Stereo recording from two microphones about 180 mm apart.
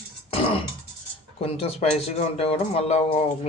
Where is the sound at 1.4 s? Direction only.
30° left (ahead or behind).